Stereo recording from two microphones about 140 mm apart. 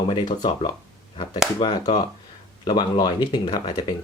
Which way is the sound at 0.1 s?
35° left (ahead or behind).